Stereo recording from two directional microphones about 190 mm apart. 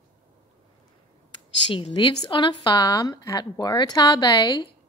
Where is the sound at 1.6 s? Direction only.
25° left (ahead or behind).